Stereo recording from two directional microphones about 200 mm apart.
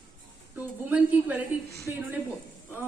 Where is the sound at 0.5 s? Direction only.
5° right (ahead or behind).